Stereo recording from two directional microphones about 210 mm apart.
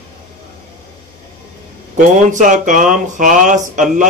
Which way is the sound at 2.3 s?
35° right (ahead or behind).